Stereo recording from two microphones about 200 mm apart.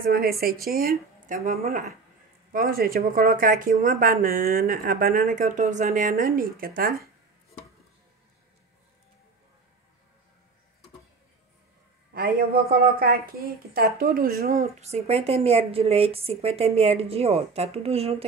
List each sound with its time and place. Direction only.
0.0 s a woman's voice: 50° right (ahead or behind)
12.1 s speech: 50° right (ahead or behind)
14.6 s a woman's voice: 35° right (ahead or behind)